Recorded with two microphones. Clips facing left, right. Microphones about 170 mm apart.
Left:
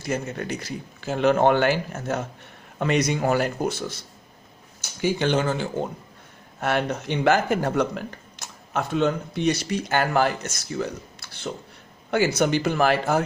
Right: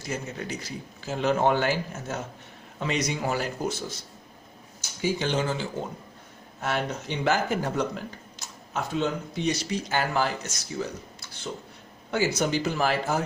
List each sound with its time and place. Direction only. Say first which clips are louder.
0.1 s speech: left 5 dB; 60° left (ahead or behind)
12.1 s speech: left 4 dB; 65° left (ahead or behind)